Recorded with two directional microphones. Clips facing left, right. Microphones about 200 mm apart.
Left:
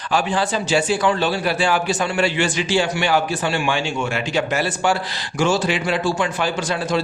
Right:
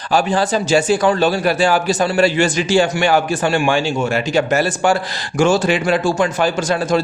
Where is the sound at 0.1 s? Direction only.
40° right (ahead or behind).